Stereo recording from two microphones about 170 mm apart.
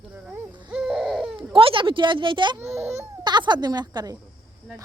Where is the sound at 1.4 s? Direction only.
30° right (ahead or behind).